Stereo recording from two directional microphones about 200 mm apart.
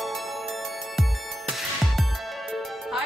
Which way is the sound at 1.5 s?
Centre (ahead or behind).